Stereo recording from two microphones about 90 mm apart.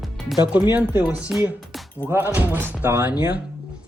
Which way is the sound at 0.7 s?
20° right (ahead or behind).